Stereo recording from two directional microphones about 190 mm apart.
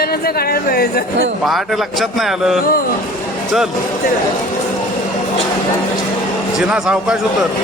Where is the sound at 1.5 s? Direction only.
Centre (ahead or behind).